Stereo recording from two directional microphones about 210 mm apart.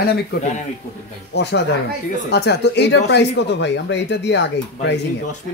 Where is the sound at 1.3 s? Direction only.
50° left (ahead or behind).